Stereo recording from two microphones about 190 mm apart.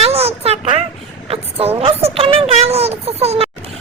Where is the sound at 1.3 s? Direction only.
30° right (ahead or behind).